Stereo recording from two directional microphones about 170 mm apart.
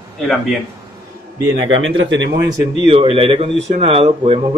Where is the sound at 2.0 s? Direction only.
90° right.